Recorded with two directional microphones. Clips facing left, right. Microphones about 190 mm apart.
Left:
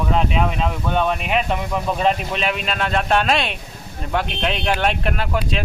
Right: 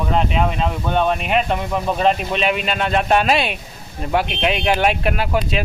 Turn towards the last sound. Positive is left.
turn(degrees=-5)  # may be behind; listen again after turning